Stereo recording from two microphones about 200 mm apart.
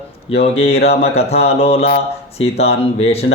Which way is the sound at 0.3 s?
30° left (ahead or behind).